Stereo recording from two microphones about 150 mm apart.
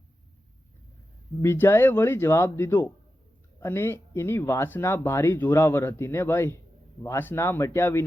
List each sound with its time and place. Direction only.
1.4 s speech: 15° left (ahead or behind)